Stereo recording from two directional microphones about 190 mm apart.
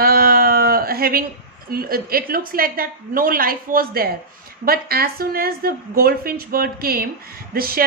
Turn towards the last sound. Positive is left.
turn(degrees=-50)  # may be behind; listen again after turning